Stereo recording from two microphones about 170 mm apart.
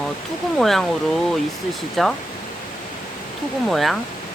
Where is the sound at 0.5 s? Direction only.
Centre (ahead or behind).